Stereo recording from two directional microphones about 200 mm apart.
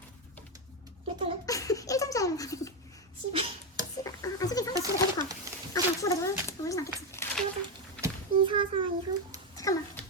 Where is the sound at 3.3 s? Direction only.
30° right (ahead or behind).